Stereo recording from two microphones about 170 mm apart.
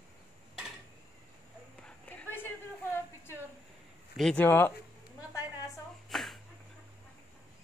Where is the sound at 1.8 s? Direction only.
10° left (ahead or behind).